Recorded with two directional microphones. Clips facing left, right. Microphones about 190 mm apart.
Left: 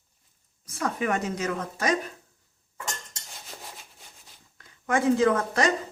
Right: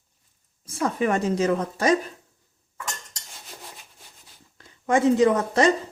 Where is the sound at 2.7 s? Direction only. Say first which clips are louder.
Right 1 dB; 25° left (ahead or behind).